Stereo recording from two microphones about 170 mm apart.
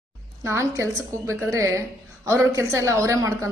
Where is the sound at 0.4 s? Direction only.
15° right (ahead or behind).